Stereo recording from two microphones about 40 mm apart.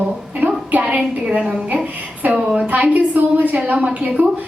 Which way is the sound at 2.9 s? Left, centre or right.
Right.